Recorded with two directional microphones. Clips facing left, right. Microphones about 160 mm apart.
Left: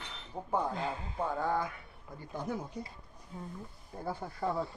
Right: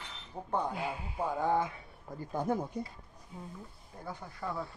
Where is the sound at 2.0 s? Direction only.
45° right (ahead or behind).